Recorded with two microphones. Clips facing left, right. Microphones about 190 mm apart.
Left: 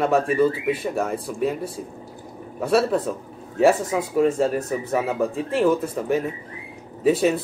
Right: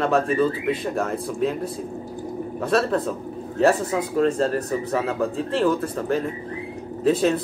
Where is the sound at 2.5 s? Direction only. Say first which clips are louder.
Left 2 dB; 10° left (ahead or behind).